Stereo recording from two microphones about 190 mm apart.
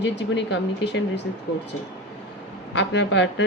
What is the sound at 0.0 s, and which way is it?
A woman's voice, 65° left (ahead or behind).